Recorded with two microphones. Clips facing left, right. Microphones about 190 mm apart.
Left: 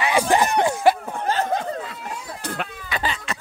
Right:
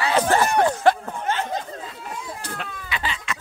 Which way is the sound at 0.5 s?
10° left (ahead or behind).